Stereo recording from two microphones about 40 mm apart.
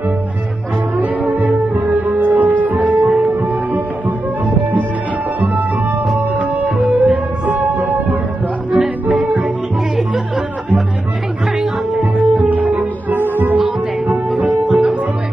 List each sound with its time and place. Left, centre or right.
0.9 s music: right
6.1 s music: right
9.2 s music: right
11.9 s music: right
13.2 s music: right
14.0 s music: right